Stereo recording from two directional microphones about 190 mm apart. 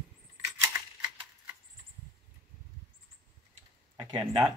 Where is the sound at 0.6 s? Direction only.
10° right (ahead or behind).